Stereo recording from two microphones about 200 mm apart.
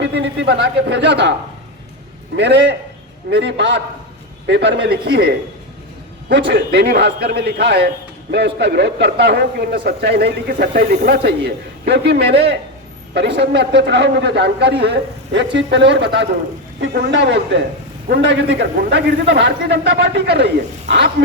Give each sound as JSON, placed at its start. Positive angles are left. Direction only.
{"t": 0.0, "sound": "a man's voice", "side_deg": -60}
{"t": 2.3, "sound": "a man's voice", "side_deg": -60}
{"t": 6.5, "sound": "a man's voice", "side_deg": -55}